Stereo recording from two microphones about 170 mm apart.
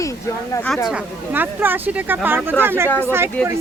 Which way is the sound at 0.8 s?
10° right (ahead or behind).